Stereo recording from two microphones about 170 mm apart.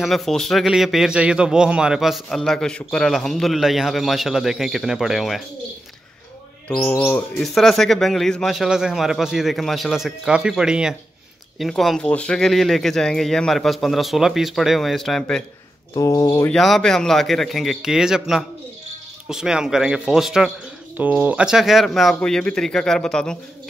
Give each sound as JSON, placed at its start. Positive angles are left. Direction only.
{"t": 0.0, "sound": "a man's voice", "side_deg": 0}
{"t": 6.7, "sound": "bird", "side_deg": 10}
{"t": 7.3, "sound": "a man's voice", "side_deg": 0}
{"t": 15.9, "sound": "speech", "side_deg": 20}
{"t": 16.5, "sound": "a man's voice", "side_deg": 0}